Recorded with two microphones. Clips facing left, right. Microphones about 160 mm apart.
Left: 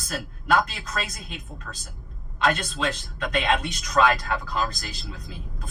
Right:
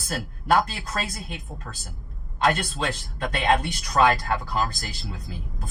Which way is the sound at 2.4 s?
35° right (ahead or behind).